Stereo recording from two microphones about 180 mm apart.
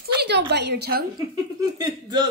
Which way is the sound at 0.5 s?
70° right (ahead or behind).